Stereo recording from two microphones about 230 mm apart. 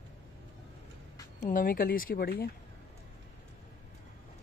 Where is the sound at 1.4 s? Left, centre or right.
Left.